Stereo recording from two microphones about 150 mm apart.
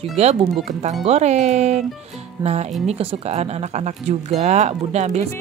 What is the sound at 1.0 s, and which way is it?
Speech, 45° right (ahead or behind).